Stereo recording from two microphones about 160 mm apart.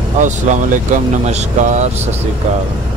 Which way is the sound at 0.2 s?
50° right (ahead or behind).